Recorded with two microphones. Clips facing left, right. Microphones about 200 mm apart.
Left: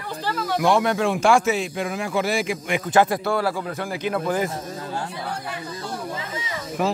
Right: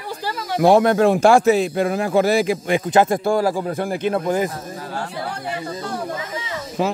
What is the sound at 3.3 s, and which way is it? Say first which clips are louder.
Speech: right 5 dB; 40° right (ahead or behind).